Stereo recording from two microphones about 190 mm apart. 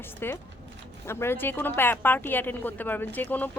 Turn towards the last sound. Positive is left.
turn(degrees=10)  # may be behind; listen again after turning